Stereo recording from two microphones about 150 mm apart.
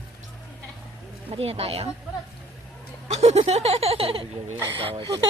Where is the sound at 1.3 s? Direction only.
40° right (ahead or behind).